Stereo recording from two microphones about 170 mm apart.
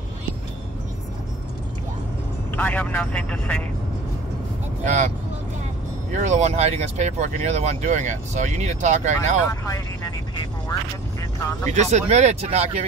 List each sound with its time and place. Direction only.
2.5 s speech: 10° left (ahead or behind)
4.8 s speech: 45° right (ahead or behind)
6.1 s speech: 45° right (ahead or behind)
9.5 s speech: 20° left (ahead or behind)
11.7 s speech: 40° right (ahead or behind)